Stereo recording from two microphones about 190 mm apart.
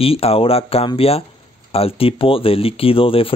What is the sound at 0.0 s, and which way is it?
Speech, 30° left (ahead or behind).